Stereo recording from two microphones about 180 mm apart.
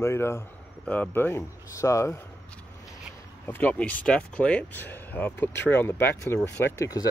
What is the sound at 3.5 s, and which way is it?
Speech, 10° left (ahead or behind).